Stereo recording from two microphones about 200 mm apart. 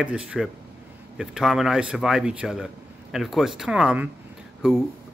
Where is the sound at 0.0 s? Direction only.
5° right (ahead or behind).